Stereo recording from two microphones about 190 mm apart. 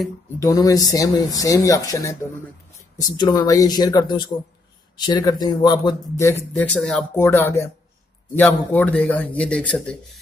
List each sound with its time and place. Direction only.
0.4 s speech: 20° left (ahead or behind)